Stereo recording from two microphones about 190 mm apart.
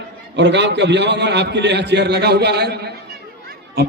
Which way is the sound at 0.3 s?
65° right (ahead or behind).